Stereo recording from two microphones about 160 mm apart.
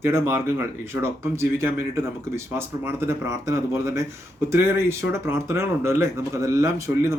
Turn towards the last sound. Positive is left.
turn(degrees=-15)  # may be behind; listen again after turning